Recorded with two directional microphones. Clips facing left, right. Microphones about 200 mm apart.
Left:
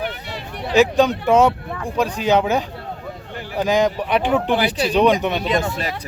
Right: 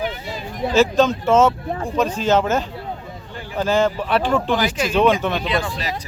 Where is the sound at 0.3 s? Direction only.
70° left (ahead or behind).